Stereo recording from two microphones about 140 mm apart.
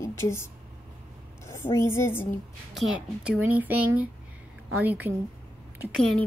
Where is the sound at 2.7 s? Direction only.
5° right (ahead or behind).